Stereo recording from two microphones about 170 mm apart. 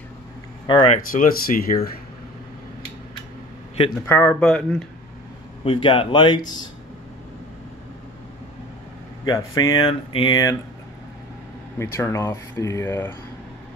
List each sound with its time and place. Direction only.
0.7 s a man's voice: 25° left (ahead or behind)
0.9 s speech: 50° left (ahead or behind)
4.0 s speech: 10° left (ahead or behind)
5.6 s a man's voice: 30° left (ahead or behind)
9.2 s a man's voice: 20° left (ahead or behind)
11.8 s speech: 15° left (ahead or behind)